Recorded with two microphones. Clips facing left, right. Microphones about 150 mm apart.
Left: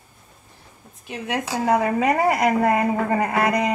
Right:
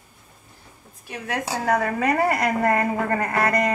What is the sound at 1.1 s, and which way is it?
A woman's voice, 20° left (ahead or behind).